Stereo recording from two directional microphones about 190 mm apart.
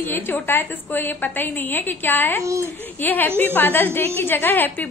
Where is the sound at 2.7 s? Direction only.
10° left (ahead or behind).